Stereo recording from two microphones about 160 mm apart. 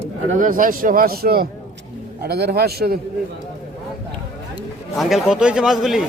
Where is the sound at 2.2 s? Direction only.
85° right.